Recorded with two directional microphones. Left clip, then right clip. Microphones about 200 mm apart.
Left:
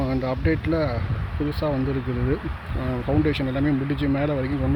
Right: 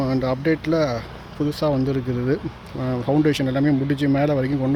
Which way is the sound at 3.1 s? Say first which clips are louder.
Right 4 dB; 20° right (ahead or behind).